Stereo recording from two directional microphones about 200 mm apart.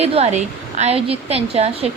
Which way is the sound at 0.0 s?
30° right (ahead or behind).